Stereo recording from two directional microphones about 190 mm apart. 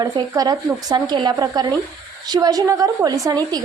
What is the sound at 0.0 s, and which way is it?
A woman's voice, 20° right (ahead or behind).